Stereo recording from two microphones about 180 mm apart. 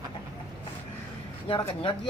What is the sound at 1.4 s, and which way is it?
Speech, 30° left (ahead or behind).